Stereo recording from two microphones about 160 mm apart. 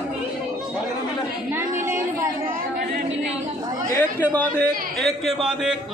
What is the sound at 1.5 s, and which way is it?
A woman's voice, 15° right (ahead or behind).